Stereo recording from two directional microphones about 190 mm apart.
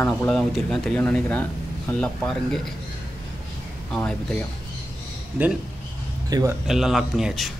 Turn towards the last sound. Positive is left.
turn(degrees=0)  # may be behind; listen again after turning